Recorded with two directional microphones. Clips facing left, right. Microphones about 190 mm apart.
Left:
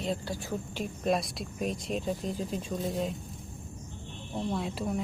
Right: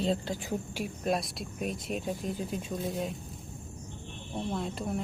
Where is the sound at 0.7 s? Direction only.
5° right (ahead or behind).